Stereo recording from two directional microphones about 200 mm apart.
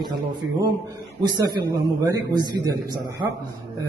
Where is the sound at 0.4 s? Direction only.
90° right.